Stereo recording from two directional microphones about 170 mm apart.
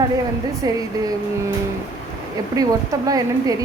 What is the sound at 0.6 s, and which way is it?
Speech, 20° right (ahead or behind).